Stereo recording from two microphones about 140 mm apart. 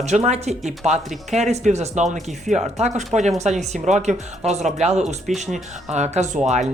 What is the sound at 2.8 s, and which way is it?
Speech, 55° right (ahead or behind).